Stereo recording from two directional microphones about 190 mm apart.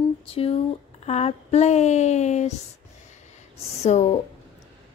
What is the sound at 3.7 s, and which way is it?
Speech, 35° left (ahead or behind).